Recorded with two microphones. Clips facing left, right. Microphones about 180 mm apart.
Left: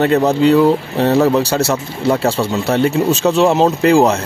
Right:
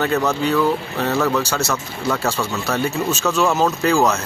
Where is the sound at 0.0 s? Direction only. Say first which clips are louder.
Left 7 dB; 30° left (ahead or behind).